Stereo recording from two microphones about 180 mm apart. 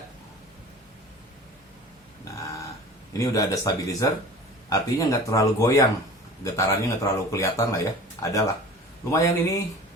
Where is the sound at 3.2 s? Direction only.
20° left (ahead or behind).